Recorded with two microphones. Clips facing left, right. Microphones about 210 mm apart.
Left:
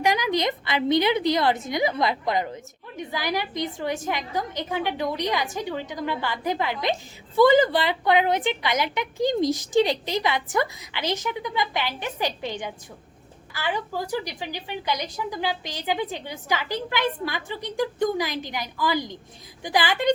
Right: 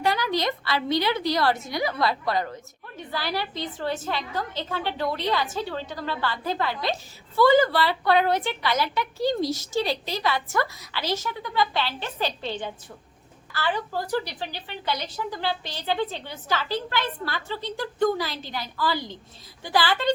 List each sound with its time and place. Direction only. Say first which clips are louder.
0.0 s a woman's voice: left 2 dB; 15° left (ahead or behind)